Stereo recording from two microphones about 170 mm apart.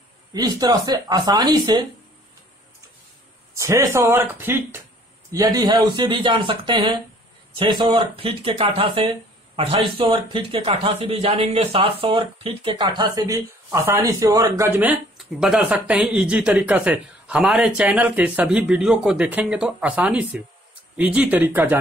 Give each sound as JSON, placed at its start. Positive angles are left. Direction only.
{"t": 0.3, "sound": "speech", "side_deg": -25}
{"t": 3.5, "sound": "speech", "side_deg": -20}